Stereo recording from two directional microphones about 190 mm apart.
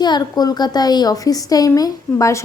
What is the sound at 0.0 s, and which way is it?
A woman's voice, 20° left (ahead or behind).